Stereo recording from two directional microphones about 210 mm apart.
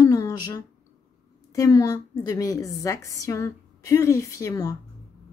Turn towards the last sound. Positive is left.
turn(degrees=15)  # may be behind; listen again after turning